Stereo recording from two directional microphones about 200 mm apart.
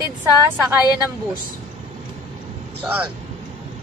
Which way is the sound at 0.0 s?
10° right (ahead or behind).